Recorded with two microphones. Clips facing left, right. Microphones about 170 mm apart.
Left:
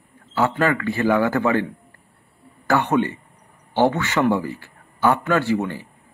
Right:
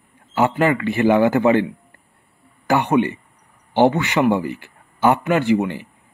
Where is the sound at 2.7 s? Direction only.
15° right (ahead or behind).